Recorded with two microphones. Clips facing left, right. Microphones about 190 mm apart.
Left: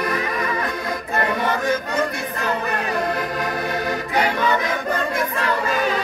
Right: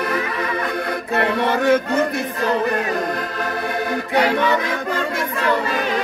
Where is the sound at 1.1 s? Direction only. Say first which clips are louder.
Right 3 dB; 70° right (ahead or behind).